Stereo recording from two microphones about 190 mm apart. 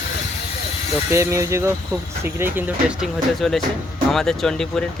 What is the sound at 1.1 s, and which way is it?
Speech, 15° right (ahead or behind).